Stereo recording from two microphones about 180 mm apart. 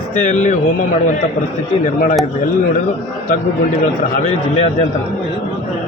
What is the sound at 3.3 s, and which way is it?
A man's voice, 45° left (ahead or behind).